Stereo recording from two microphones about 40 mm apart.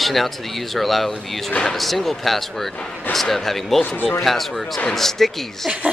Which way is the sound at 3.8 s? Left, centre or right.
Left.